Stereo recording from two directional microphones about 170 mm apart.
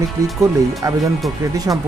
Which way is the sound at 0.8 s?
20° right (ahead or behind).